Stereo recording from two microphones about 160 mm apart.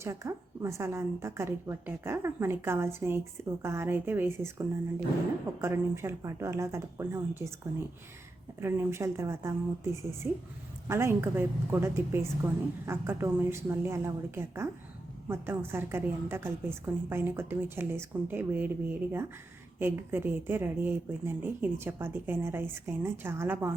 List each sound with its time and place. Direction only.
0.0 s a woman's voice: 20° right (ahead or behind)